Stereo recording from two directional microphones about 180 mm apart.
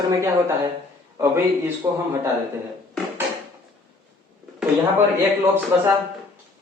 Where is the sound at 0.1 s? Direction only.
15° right (ahead or behind).